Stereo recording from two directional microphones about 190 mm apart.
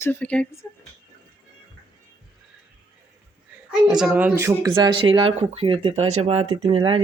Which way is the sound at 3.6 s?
5° right (ahead or behind).